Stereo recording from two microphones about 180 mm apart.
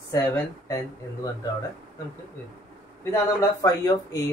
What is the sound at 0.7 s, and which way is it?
Speech, 20° left (ahead or behind).